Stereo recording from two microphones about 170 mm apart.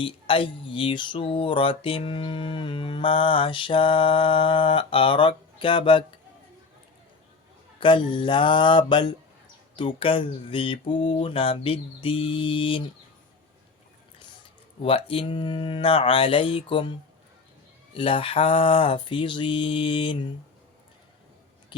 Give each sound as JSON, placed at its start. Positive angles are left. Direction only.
{"t": 0.0, "sound": "speech", "side_deg": 30}
{"t": 7.8, "sound": "mantra", "side_deg": 30}
{"t": 9.7, "sound": "speech", "side_deg": 30}
{"t": 14.8, "sound": "speech", "side_deg": 35}
{"t": 17.9, "sound": "mantra", "side_deg": 30}
{"t": 21.7, "sound": "a sound", "side_deg": 25}